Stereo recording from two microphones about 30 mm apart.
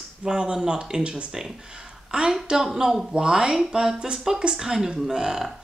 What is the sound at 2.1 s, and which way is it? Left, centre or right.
Speech, right.